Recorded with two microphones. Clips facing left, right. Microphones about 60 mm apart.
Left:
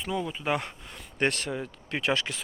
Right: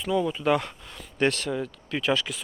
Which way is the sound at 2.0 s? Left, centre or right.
Left.